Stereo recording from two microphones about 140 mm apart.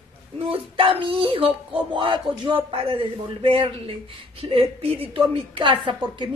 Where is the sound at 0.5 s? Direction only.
40° right (ahead or behind).